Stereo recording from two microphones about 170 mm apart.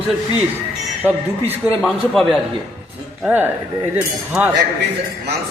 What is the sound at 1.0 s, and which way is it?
Speech, 10° right (ahead or behind).